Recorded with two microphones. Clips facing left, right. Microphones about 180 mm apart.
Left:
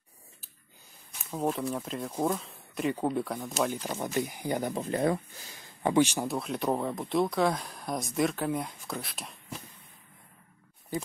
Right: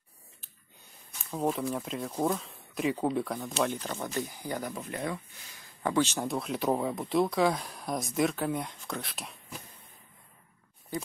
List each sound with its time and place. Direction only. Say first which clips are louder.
1.3 s speech: even; centre (ahead or behind); by 5.6 s 35° left (ahead or behind)
5.6 s speech: left 3 dB; 20° left (ahead or behind)
6.2 s speech: even; centre (ahead or behind)